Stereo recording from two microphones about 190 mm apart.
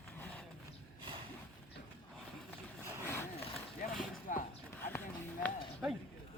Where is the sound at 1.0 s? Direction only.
25° right (ahead or behind).